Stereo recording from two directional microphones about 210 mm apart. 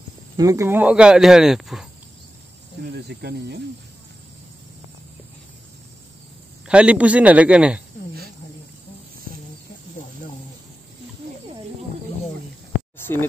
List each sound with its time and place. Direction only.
0.4 s speech: 15° right (ahead or behind)
2.8 s speech: 50° right (ahead or behind)
6.7 s speech: 5° right (ahead or behind)